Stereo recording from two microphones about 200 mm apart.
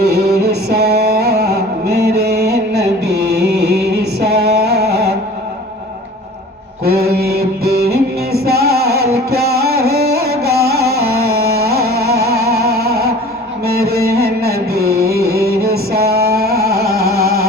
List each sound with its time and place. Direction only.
0.0 s music: 55° right (ahead or behind)
6.8 s music: 50° right (ahead or behind)
11.3 s carnatic music: 50° right (ahead or behind)
12.5 s music: 50° right (ahead or behind)